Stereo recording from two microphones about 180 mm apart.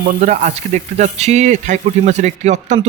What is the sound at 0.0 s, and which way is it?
Speech, 45° right (ahead or behind).